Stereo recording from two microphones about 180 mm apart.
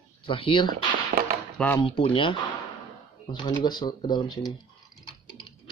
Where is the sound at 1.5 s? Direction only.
5° left (ahead or behind).